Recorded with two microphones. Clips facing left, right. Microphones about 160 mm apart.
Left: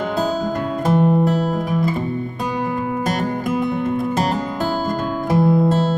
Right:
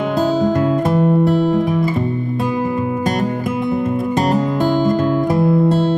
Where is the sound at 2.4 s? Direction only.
Centre (ahead or behind).